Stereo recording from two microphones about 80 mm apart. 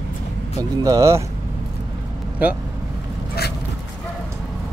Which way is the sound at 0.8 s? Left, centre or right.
Right.